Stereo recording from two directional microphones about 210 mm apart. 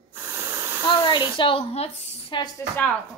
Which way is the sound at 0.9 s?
20° left (ahead or behind).